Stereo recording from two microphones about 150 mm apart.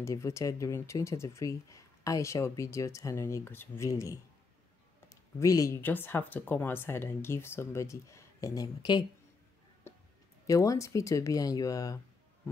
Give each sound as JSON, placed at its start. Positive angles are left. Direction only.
{"t": 0.0, "sound": "speech", "side_deg": 20}
{"t": 9.9, "sound": "music", "side_deg": 15}
{"t": 10.4, "sound": "speech", "side_deg": 20}